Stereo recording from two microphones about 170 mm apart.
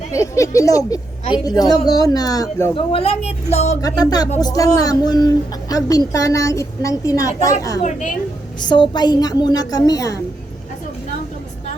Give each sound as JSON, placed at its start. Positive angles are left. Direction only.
{"t": 0.1, "sound": "a woman's voice", "side_deg": 20}
{"t": 2.7, "sound": "speech", "side_deg": 35}
{"t": 3.8, "sound": "a woman's voice", "side_deg": 20}
{"t": 7.9, "sound": "speech", "side_deg": 45}
{"t": 8.6, "sound": "a woman's voice", "side_deg": 25}